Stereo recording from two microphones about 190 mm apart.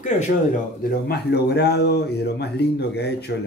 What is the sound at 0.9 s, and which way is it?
Speech, 60° left (ahead or behind).